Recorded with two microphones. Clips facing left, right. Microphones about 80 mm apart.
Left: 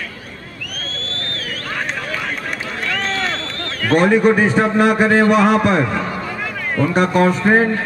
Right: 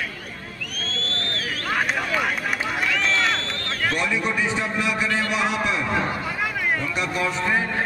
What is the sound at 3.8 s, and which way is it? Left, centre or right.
A man's voice, left.